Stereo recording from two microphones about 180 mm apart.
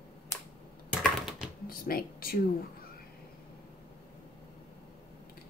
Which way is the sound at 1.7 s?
55° left (ahead or behind).